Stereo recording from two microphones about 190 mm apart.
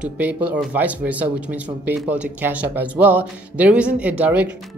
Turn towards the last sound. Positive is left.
turn(degrees=-10)  # may be behind; listen again after turning